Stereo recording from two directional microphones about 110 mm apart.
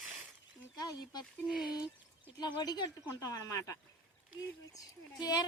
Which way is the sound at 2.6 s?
40° left (ahead or behind).